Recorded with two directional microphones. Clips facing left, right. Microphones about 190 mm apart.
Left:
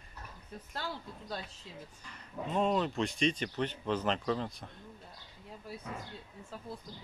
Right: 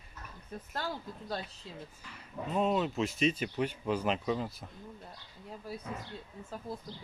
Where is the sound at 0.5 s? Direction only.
50° right (ahead or behind).